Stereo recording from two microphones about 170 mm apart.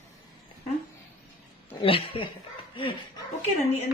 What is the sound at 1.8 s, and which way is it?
Speech, 30° left (ahead or behind).